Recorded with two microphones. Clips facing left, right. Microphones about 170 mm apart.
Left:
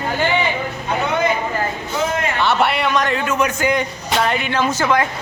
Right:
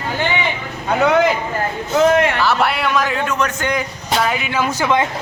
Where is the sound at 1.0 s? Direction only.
90° right.